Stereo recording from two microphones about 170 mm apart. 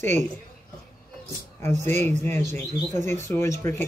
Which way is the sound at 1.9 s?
15° left (ahead or behind).